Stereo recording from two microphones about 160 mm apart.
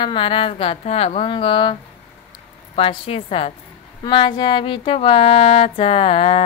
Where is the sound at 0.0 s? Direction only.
30° left (ahead or behind).